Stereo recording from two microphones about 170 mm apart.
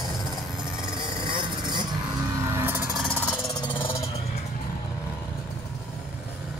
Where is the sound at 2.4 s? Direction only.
15° right (ahead or behind).